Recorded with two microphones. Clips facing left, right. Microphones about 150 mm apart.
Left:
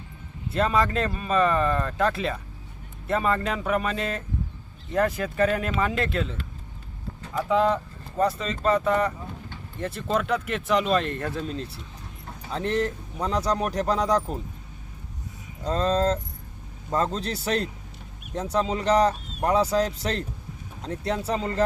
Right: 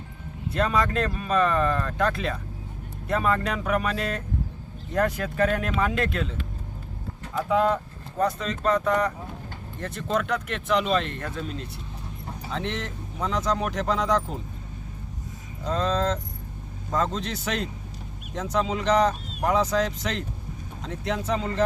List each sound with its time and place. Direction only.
0.5 s speech: centre (ahead or behind)
7.3 s speech: centre (ahead or behind)
11.1 s speech: 40° left (ahead or behind)
15.6 s speech: 35° left (ahead or behind)